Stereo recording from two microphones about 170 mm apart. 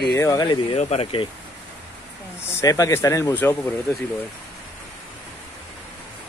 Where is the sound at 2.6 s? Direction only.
20° left (ahead or behind).